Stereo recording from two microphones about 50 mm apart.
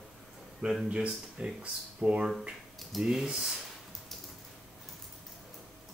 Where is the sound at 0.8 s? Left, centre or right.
Right.